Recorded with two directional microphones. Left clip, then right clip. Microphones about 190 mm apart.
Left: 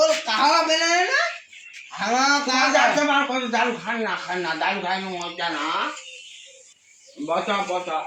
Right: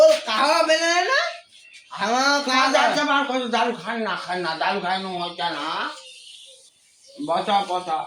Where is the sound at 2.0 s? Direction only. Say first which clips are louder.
Even; 15° right (ahead or behind).